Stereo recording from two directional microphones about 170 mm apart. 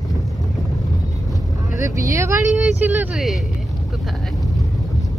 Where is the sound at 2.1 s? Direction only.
15° right (ahead or behind).